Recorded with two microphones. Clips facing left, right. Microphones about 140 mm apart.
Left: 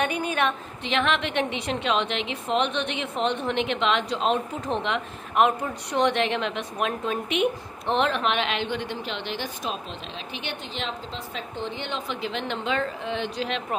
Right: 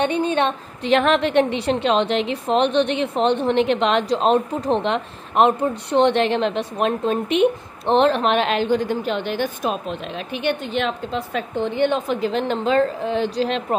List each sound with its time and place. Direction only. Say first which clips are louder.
0.0 s a woman's voice: right 6 dB; 30° right (ahead or behind)
0.8 s a woman's voice: right 8 dB; 40° right (ahead or behind)